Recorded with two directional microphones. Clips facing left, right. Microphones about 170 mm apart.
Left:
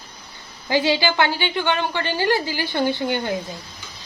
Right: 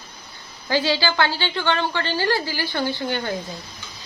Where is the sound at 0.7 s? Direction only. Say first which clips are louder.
Left 2 dB; 20° left (ahead or behind).